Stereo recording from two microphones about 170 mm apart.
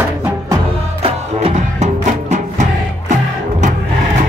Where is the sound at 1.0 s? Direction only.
35° right (ahead or behind).